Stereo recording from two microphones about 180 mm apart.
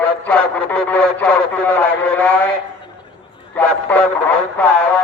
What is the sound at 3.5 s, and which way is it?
Radio, 10° left (ahead or behind).